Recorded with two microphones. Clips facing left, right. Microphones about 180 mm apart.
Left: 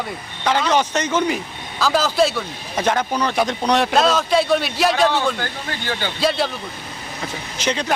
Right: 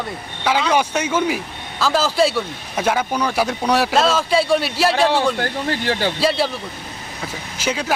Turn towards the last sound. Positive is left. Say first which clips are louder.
# even
turn(degrees=-5)  # may be behind; listen again after turning